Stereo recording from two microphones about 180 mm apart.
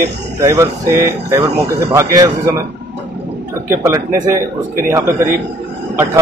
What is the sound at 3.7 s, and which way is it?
Speech, 15° right (ahead or behind).